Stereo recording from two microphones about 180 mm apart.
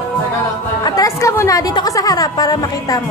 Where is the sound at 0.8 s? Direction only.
20° left (ahead or behind).